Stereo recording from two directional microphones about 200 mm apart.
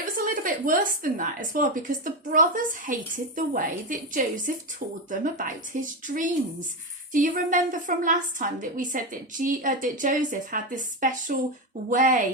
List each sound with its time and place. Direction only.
0.0 s speech: 45° right (ahead or behind)